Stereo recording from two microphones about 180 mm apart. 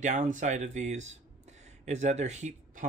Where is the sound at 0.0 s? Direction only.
45° right (ahead or behind).